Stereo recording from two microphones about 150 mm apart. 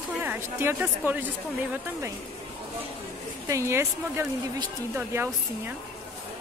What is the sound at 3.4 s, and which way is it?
A woman's voice, 20° right (ahead or behind).